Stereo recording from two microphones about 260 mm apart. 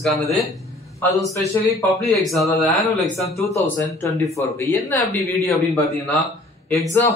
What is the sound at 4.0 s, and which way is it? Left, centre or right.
A man's voice, centre.